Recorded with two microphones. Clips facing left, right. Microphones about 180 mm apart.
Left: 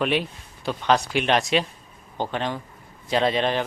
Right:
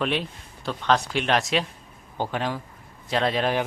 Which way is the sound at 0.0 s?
5° left (ahead or behind).